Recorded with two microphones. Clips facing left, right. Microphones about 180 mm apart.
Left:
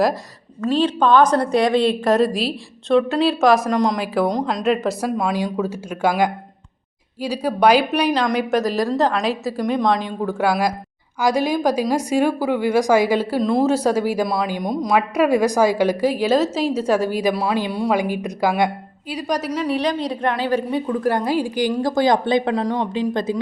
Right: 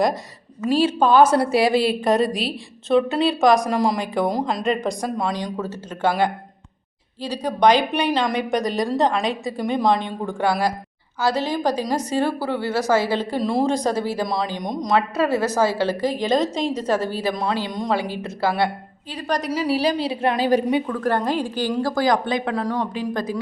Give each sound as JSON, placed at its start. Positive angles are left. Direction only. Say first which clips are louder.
{"t": 0.6, "sound": "a woman's voice", "louder": "even", "side_deg": -10}
{"t": 13.4, "sound": "a woman's voice", "louder": "left 2 dB", "side_deg": 0}
{"t": 19.7, "sound": "a woman's voice", "louder": "right 2 dB", "side_deg": -10}
{"t": 20.8, "sound": "a woman's voice", "louder": "left 2 dB", "side_deg": 15}